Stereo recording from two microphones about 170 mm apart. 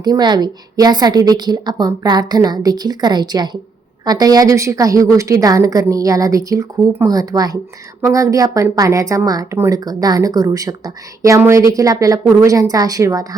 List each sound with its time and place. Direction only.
0.0 s a woman's voice: 25° right (ahead or behind)